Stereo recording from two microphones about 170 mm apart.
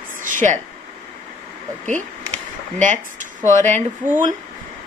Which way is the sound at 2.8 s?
50° right (ahead or behind).